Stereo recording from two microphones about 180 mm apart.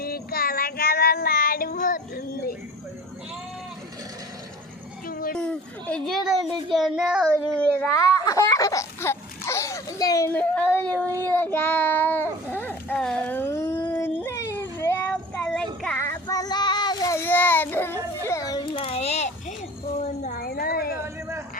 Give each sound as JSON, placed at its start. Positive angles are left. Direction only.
{"t": 0.0, "sound": "child singing", "side_deg": 55}
{"t": 5.0, "sound": "a sound", "side_deg": 50}
{"t": 5.3, "sound": "a child's voice", "side_deg": 5}
{"t": 8.2, "sound": "speech", "side_deg": 20}
{"t": 11.1, "sound": "child singing", "side_deg": -15}
{"t": 11.3, "sound": "child singing", "side_deg": 10}
{"t": 16.0, "sound": "child singing", "side_deg": 15}
{"t": 18.3, "sound": "children playing", "side_deg": 20}
{"t": 20.0, "sound": "a sound", "side_deg": 50}
{"t": 21.0, "sound": "a sound", "side_deg": -15}